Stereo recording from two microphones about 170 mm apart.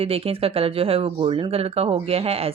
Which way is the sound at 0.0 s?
35° right (ahead or behind).